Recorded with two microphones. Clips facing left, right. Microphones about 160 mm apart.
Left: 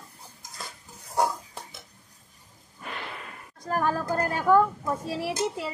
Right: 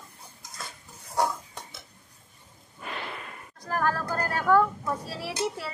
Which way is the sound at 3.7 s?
20° left (ahead or behind).